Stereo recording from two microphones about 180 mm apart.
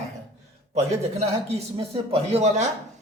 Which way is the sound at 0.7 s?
35° right (ahead or behind).